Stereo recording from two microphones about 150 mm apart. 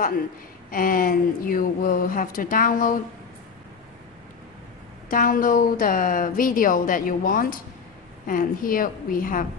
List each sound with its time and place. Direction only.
0.7 s a woman's voice: 70° left (ahead or behind)
5.1 s a woman's voice: 65° left (ahead or behind)